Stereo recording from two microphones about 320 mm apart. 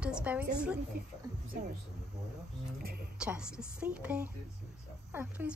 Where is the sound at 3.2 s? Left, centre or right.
Centre.